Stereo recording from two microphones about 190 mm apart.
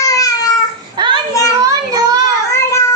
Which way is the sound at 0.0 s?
20° left (ahead or behind).